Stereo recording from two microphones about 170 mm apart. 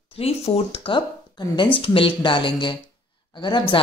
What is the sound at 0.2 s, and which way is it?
A woman's voice, 35° left (ahead or behind).